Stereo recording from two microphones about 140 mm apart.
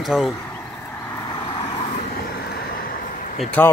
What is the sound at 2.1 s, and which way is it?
Vehicle, 90° left.